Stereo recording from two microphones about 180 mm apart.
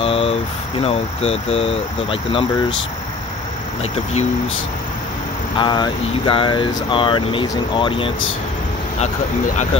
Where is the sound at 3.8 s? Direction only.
35° left (ahead or behind).